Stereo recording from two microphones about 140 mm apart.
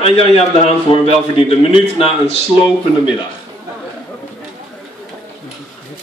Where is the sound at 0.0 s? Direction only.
50° left (ahead or behind).